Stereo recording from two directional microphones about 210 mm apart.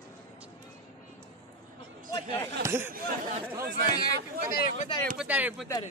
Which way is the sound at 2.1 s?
20° left (ahead or behind).